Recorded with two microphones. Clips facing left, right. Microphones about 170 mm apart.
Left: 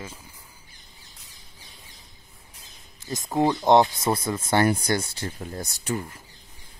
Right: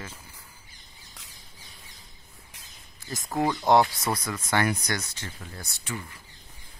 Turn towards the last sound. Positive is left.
turn(degrees=40)  # may be behind; listen again after turning